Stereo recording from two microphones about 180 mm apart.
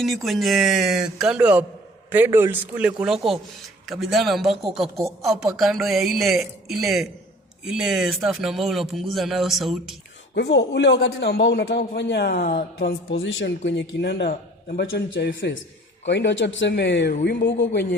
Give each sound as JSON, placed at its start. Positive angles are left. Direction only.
{"t": 0.0, "sound": "a man's voice", "side_deg": 0}
{"t": 10.3, "sound": "a man's voice", "side_deg": 75}
{"t": 13.1, "sound": "speech", "side_deg": 85}
{"t": 13.7, "sound": "a man's voice", "side_deg": 75}
{"t": 17.2, "sound": "speech", "side_deg": 90}